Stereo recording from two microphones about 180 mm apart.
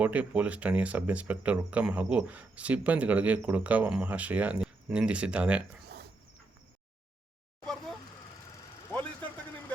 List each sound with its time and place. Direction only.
0.0 s speech: 10° right (ahead or behind)
7.6 s vehicle: 5° left (ahead or behind)